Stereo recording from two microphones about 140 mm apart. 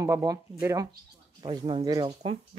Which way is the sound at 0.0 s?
25° right (ahead or behind).